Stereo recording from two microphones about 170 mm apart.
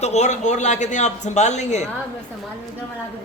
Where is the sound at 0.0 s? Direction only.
40° left (ahead or behind).